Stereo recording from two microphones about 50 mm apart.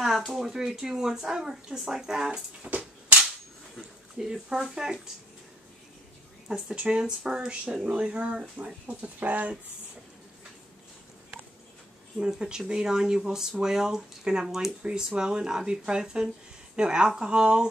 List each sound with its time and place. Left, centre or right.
0.3 s speech: centre
2.3 s a sound: right
4.2 s speech: centre
6.5 s speech: centre
8.8 s speech: right
12.2 s speech: centre